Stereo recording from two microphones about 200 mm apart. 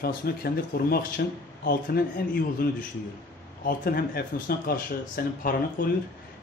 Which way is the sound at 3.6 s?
50° left (ahead or behind).